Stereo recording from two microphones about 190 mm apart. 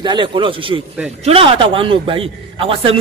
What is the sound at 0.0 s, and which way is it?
A man's voice, 25° right (ahead or behind).